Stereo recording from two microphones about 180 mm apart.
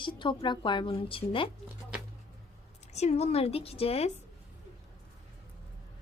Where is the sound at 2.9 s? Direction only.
35° left (ahead or behind).